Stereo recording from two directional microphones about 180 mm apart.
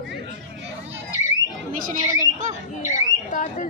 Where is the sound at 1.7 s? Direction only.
45° right (ahead or behind).